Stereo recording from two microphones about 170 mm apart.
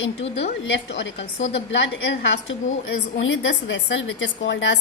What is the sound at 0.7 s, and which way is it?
A woman's voice, 90° left.